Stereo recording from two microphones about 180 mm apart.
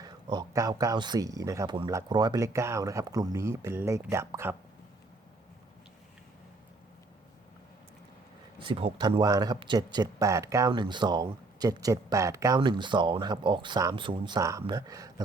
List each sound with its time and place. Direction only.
0.0 s speech: 20° right (ahead or behind)
8.5 s speech: 30° right (ahead or behind)